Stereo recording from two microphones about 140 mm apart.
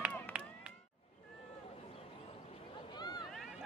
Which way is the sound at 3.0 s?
30° left (ahead or behind).